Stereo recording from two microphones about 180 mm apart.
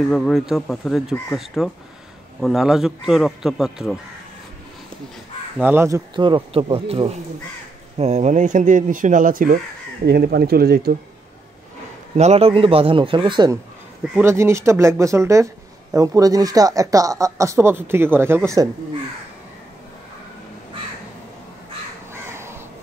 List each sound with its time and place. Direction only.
0.1 s speech: centre (ahead or behind)
5.6 s speech: 10° right (ahead or behind)
6.1 s a man's voice: 25° right (ahead or behind); by 9.6 s 50° right (ahead or behind)
10.0 s speech: 60° right (ahead or behind)
12.2 s a man's voice: 35° right (ahead or behind)
14.1 s speech: 15° right (ahead or behind)
22.1 s crow: 15° right (ahead or behind)